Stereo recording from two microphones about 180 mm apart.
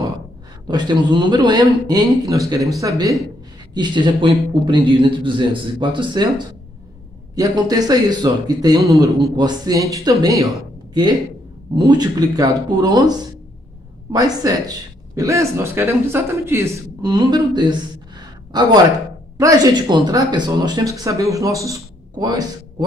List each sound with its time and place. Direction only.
0.7 s speech: 25° right (ahead or behind)